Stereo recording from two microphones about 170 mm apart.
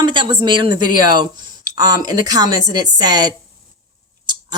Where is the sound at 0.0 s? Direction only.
30° right (ahead or behind).